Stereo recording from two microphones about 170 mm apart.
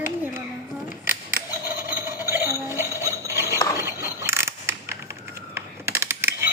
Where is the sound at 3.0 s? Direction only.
15° right (ahead or behind).